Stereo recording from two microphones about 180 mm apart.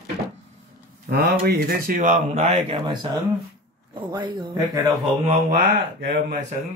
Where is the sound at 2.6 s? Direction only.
25° right (ahead or behind).